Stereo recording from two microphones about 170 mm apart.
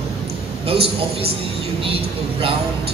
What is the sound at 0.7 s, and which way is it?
A woman's voice, 35° right (ahead or behind).